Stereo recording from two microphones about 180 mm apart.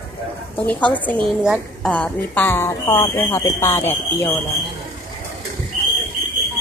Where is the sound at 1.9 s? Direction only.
10° left (ahead or behind).